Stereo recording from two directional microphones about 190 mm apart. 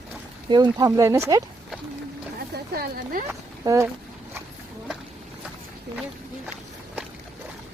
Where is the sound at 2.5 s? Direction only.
55° right (ahead or behind).